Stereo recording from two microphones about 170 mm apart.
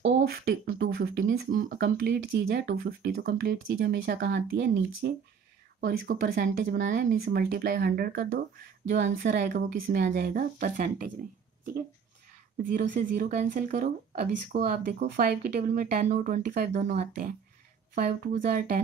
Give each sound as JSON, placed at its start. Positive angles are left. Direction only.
{"t": 0.2, "sound": "speech", "side_deg": -65}
{"t": 7.2, "sound": "speech", "side_deg": -65}
{"t": 8.8, "sound": "speech", "side_deg": -90}
{"t": 9.7, "sound": "speech", "side_deg": -80}
{"t": 10.1, "sound": "speech", "side_deg": -65}
{"t": 12.6, "sound": "speech", "side_deg": -60}
{"t": 13.7, "sound": "speech", "side_deg": -55}
{"t": 15.1, "sound": "speech", "side_deg": -55}
{"t": 17.9, "sound": "speech", "side_deg": -60}